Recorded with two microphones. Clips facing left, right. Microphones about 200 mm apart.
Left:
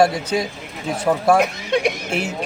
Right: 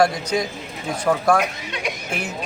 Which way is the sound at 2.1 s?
25° left (ahead or behind).